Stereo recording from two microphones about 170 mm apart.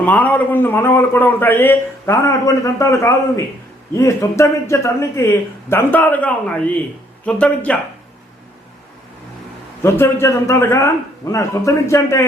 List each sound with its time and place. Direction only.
0.0 s a man's voice: 10° left (ahead or behind)
9.8 s a man's voice: 15° left (ahead or behind)